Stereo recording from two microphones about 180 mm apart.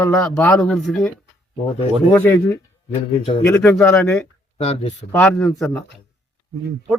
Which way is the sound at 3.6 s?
5° left (ahead or behind).